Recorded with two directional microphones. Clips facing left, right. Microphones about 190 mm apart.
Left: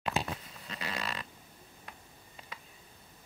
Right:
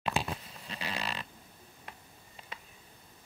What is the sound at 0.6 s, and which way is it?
Fart, 30° right (ahead or behind).